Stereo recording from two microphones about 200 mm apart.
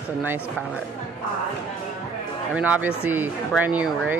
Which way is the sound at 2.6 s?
5° right (ahead or behind).